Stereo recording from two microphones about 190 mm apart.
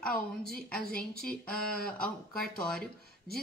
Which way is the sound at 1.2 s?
5° left (ahead or behind).